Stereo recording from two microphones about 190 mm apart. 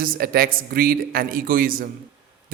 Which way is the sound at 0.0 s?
50° right (ahead or behind).